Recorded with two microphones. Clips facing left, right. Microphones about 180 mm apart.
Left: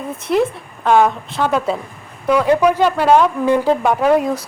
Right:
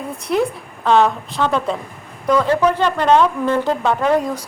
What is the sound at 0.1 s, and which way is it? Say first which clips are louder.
A woman's voice: left 2 dB; centre (ahead or behind).